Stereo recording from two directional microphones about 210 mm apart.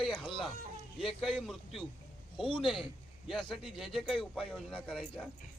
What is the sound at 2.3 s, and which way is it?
Speech, 25° left (ahead or behind).